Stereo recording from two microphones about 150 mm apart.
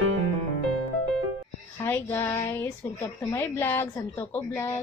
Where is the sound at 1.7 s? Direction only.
15° left (ahead or behind).